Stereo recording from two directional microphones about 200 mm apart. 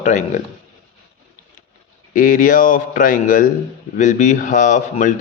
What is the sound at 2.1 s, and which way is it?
A man's voice, 45° left (ahead or behind).